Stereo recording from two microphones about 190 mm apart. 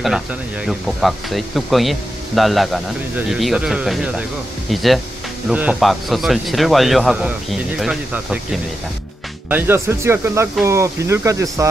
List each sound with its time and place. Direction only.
0.0 s speech: centre (ahead or behind)